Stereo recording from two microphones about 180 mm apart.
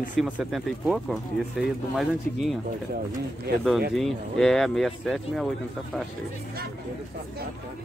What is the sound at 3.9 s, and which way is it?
Speech, centre (ahead or behind).